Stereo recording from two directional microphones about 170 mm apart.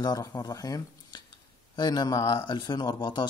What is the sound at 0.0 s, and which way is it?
Speech, 20° left (ahead or behind).